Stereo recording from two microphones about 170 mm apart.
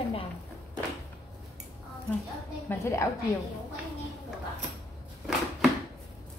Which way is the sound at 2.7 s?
15° left (ahead or behind).